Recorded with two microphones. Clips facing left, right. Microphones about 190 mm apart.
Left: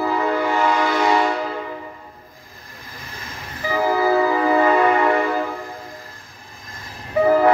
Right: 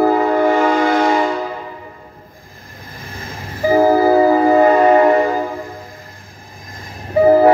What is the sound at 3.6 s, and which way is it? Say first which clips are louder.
Train: right 8 dB; 45° right (ahead or behind).